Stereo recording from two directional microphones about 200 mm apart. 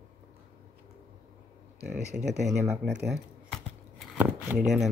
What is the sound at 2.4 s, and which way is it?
Speech, 5° right (ahead or behind).